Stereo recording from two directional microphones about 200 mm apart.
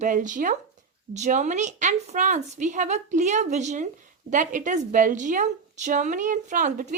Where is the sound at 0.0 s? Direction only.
40° right (ahead or behind).